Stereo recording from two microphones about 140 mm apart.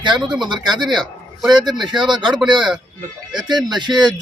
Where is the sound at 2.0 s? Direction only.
35° right (ahead or behind).